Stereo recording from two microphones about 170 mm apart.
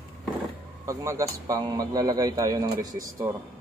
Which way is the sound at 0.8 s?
15° right (ahead or behind).